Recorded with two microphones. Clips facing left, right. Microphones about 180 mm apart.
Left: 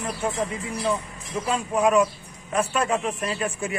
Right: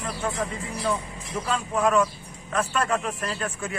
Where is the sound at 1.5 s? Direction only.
10° left (ahead or behind).